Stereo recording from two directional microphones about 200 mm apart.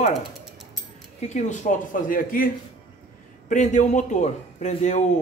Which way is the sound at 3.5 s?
35° left (ahead or behind).